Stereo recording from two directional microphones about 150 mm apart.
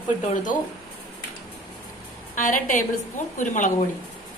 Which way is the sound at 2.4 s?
60° left (ahead or behind).